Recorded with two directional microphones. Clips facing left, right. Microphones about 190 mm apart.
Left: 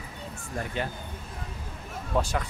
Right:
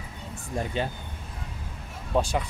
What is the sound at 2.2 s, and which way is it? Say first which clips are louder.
Speech: right 3 dB; 15° right (ahead or behind).